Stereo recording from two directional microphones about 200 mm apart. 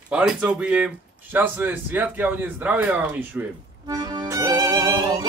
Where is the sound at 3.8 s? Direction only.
20° right (ahead or behind).